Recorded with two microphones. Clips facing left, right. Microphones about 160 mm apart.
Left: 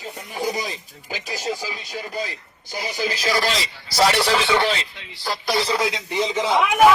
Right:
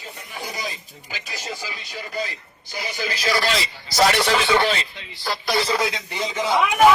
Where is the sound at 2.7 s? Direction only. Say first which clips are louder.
Left 3 dB; 40° left (ahead or behind).